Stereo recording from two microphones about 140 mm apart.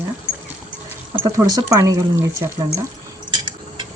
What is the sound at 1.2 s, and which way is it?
Speech, 25° right (ahead or behind).